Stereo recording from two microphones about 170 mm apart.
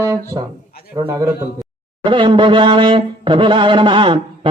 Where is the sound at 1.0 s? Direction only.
20° right (ahead or behind).